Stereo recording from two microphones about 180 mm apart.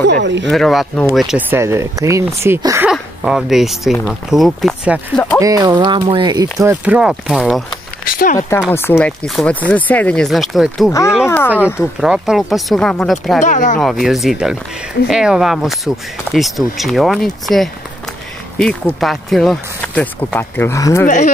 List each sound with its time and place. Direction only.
0.0 s speech: 75° right (ahead or behind)
0.5 s speech: centre (ahead or behind)
1.6 s speech: 15° right (ahead or behind)
2.9 s speech: 5° right (ahead or behind)
5.4 s speech: 20° right (ahead or behind)
6.6 s speech: 10° right (ahead or behind)
8.1 s speech: 50° left (ahead or behind)
8.4 s speech: 10° left (ahead or behind)
11.2 s speech: 10° left (ahead or behind)
12.0 s speech: 5° right (ahead or behind)
13.4 s speech: 45° left (ahead or behind)
13.7 s speech: centre (ahead or behind); by 21.1 s 15° left (ahead or behind)